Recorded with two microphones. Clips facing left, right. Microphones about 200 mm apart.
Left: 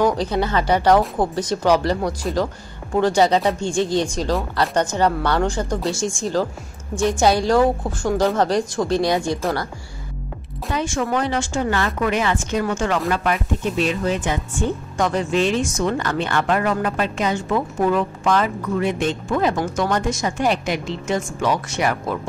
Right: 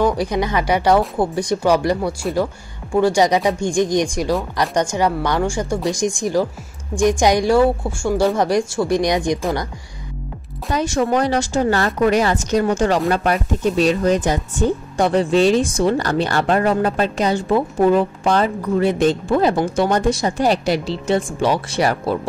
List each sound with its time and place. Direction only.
0.1 s speech: 15° right (ahead or behind)
10.7 s speech: 40° right (ahead or behind)